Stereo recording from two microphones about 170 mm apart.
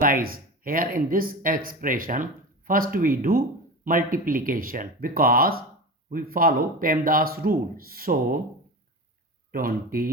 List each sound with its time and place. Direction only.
0.0 s speech: 55° right (ahead or behind)
9.5 s speech: 60° right (ahead or behind)